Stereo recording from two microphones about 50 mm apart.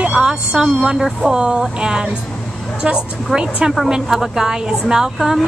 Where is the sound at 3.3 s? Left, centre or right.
Centre.